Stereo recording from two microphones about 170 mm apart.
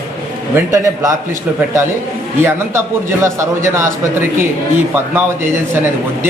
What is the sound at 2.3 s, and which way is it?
A man's voice, 15° right (ahead or behind).